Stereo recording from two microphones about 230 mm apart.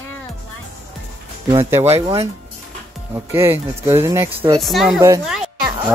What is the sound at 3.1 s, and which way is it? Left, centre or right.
A woman's voice, centre.